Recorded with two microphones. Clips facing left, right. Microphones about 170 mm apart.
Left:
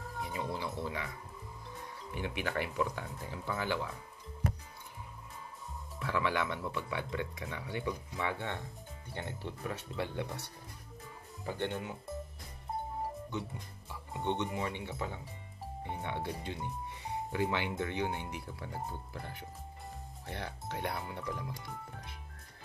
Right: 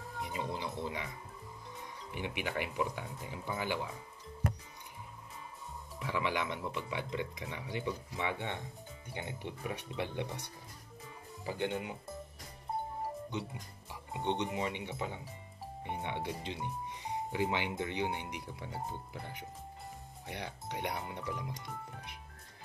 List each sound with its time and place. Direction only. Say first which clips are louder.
0.2 s speech: left 1 dB; 20° right (ahead or behind)
2.1 s speech: left 1 dB; 15° right (ahead or behind)
5.9 s speech: left 2 dB; 15° right (ahead or behind)
11.5 s speech: right 1 dB; 15° right (ahead or behind)
14.1 s speech: even; 20° right (ahead or behind)